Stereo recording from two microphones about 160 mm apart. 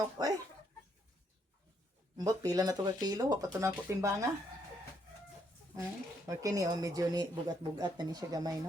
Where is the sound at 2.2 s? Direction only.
25° right (ahead or behind).